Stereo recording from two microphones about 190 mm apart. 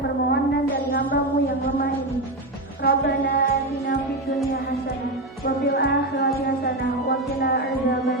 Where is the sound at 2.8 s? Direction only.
55° left (ahead or behind).